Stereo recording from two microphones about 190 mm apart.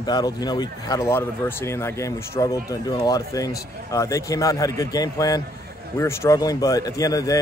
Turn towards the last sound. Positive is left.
turn(degrees=20)  # may be behind; listen again after turning